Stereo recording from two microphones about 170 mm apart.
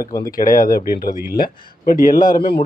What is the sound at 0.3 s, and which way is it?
Speech, 55° left (ahead or behind).